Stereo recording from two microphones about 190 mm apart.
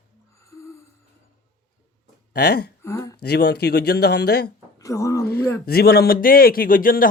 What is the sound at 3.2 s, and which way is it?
Speech, 60° left (ahead or behind).